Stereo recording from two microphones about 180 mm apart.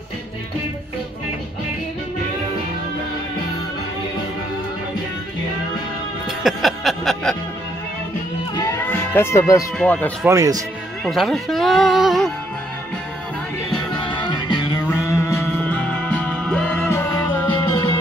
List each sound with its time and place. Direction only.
6.2 s music: centre (ahead or behind)
8.5 s music: 15° left (ahead or behind)
9.8 s speech: 5° left (ahead or behind)
10.2 s a man's voice: 15° right (ahead or behind)
11.1 s speech: centre (ahead or behind)
14.0 s music: 25° left (ahead or behind)
17.6 s music: 25° left (ahead or behind)